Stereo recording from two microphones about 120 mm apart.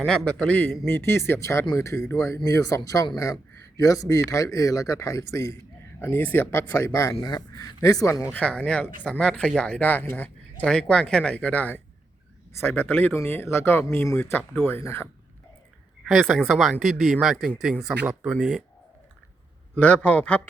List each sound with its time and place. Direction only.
0.3 s speech: 10° left (ahead or behind)
6.7 s speech: 25° left (ahead or behind)
8.3 s speech: 10° left (ahead or behind)
16.0 s speech: centre (ahead or behind)
18.0 s speech: 20° right (ahead or behind)
18.3 s speech: 5° right (ahead or behind)
19.7 s speech: 10° left (ahead or behind)